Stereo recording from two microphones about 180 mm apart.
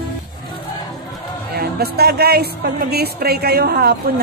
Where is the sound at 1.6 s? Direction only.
60° right (ahead or behind).